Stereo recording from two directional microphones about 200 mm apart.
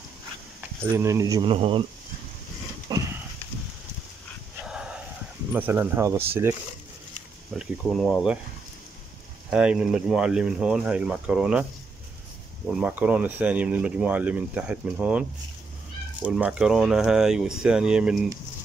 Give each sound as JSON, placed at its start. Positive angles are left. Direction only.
{"t": 0.9, "sound": "speech", "side_deg": -15}
{"t": 2.9, "sound": "horse", "side_deg": -20}
{"t": 4.6, "sound": "a sound", "side_deg": -5}
{"t": 5.5, "sound": "speech", "side_deg": -10}
{"t": 7.5, "sound": "speech", "side_deg": 0}
{"t": 9.5, "sound": "speech", "side_deg": -5}
{"t": 12.6, "sound": "speech", "side_deg": -5}